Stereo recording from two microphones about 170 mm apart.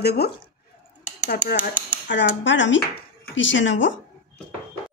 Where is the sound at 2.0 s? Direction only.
90° left.